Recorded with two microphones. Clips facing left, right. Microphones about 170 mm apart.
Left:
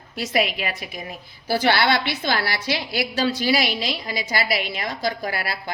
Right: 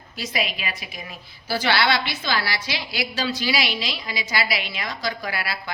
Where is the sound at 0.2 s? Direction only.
60° left (ahead or behind).